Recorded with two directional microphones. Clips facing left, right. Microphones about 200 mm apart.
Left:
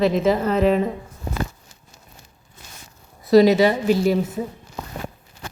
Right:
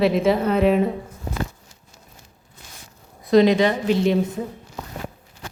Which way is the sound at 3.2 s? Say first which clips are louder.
Left 2 dB; 5° left (ahead or behind).